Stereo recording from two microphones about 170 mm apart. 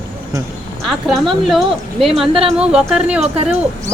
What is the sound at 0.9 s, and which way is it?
Speech, centre (ahead or behind).